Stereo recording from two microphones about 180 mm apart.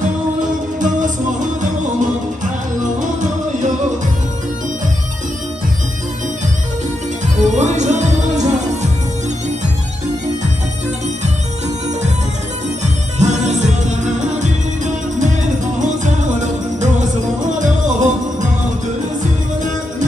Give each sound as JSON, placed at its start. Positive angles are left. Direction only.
{"t": 0.7, "sound": "music", "side_deg": -45}
{"t": 7.4, "sound": "music", "side_deg": -40}
{"t": 12.8, "sound": "music", "side_deg": -40}